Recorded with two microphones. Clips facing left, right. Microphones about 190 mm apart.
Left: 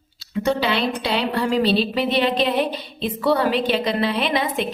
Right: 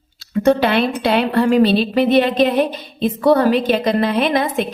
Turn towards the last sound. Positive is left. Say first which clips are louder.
# right 5 dB
turn(degrees=-45)  # may be behind; listen again after turning